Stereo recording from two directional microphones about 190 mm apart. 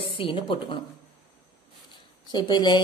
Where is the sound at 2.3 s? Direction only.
20° left (ahead or behind).